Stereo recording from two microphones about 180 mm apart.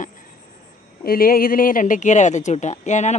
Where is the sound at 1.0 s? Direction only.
55° left (ahead or behind).